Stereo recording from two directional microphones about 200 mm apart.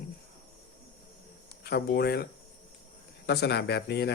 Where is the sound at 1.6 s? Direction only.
55° left (ahead or behind).